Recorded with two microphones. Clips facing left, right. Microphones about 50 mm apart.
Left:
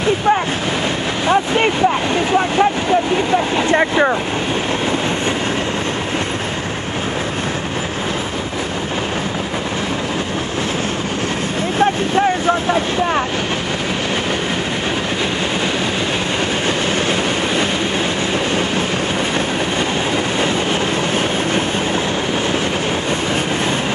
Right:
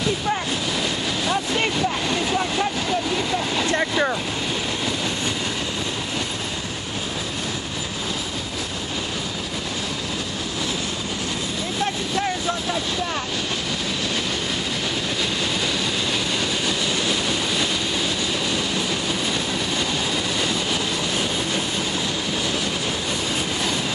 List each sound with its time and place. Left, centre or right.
1.2 s speech: left
11.8 s speech: left
16.6 s train: left